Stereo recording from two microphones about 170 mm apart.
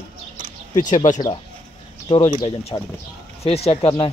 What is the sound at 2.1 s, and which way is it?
Speech, 25° left (ahead or behind).